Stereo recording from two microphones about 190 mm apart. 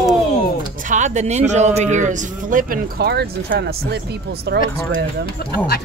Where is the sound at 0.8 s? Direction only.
40° right (ahead or behind); by 4.5 s 60° right (ahead or behind).